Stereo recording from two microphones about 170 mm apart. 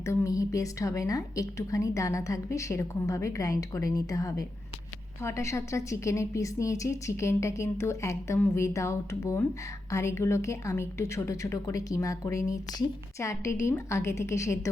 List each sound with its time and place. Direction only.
0.0 s a woman's voice: 15° left (ahead or behind)